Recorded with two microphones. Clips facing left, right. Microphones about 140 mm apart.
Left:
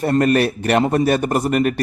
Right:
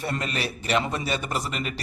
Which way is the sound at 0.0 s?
55° left (ahead or behind).